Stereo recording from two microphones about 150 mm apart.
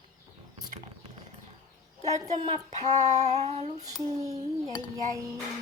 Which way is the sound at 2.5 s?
45° right (ahead or behind).